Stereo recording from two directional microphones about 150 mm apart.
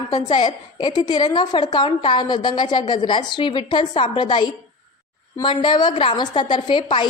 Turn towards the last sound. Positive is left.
turn(degrees=30)  # may be behind; listen again after turning